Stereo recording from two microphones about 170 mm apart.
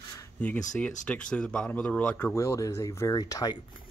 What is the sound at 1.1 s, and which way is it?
Speech, 5° left (ahead or behind).